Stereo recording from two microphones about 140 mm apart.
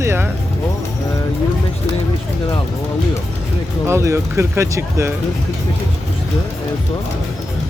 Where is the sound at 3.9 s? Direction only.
20° right (ahead or behind).